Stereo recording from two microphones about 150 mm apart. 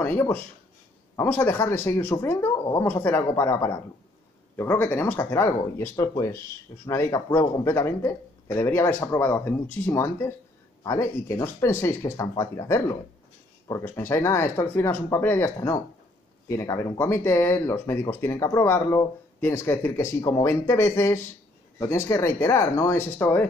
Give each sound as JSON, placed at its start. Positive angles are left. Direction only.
{"t": 0.0, "sound": "speech", "side_deg": 15}